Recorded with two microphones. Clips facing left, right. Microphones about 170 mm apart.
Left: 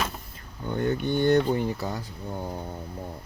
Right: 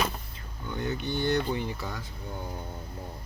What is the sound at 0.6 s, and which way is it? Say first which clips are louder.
Speech: left 6 dB; 50° left (ahead or behind).